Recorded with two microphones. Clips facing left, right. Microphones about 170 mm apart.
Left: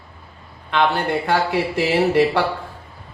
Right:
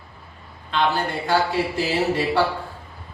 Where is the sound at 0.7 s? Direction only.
65° left (ahead or behind).